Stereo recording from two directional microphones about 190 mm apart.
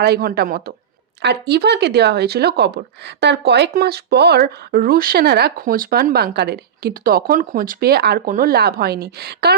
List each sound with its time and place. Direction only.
0.0 s a woman's voice: 55° right (ahead or behind)